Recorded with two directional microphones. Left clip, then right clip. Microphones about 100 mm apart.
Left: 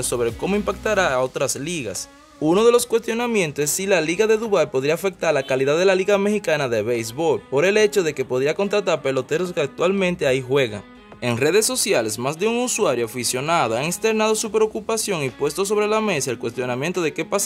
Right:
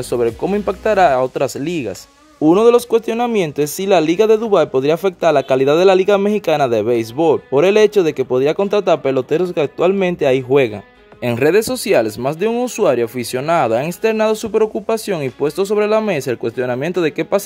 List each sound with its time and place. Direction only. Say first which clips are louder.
0.1 s speech: right 6 dB; 25° right (ahead or behind)
0.7 s speech: right 8 dB; 45° right (ahead or behind)